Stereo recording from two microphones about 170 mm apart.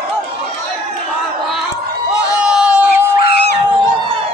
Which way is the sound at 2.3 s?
5° right (ahead or behind).